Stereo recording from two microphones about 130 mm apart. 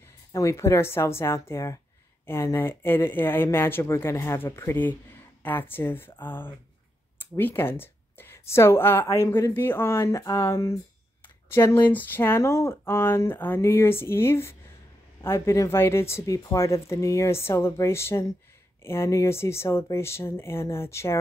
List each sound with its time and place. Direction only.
0.3 s a woman's voice: 25° left (ahead or behind)